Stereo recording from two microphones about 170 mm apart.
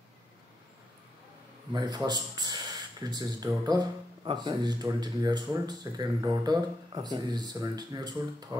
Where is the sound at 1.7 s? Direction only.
25° right (ahead or behind).